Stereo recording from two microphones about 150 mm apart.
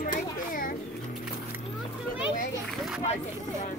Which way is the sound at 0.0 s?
60° left (ahead or behind).